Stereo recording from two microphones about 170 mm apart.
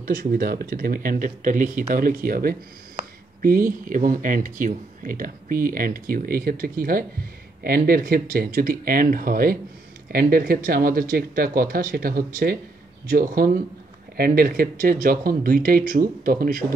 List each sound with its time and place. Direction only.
0.0 s speech: 60° right (ahead or behind)